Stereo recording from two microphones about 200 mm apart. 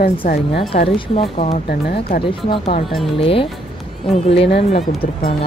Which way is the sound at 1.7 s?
55° left (ahead or behind).